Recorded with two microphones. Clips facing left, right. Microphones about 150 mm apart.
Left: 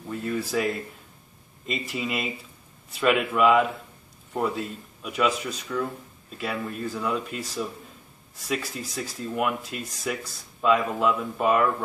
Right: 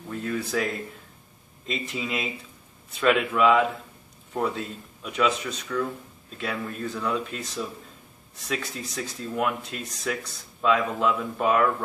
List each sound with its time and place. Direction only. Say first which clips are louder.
0.1 s speech: left 1 dB; 5° left (ahead or behind)